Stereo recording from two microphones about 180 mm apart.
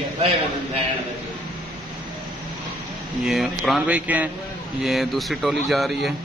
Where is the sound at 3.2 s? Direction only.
Centre (ahead or behind).